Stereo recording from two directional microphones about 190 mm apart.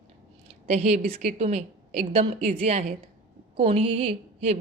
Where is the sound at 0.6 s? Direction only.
35° right (ahead or behind).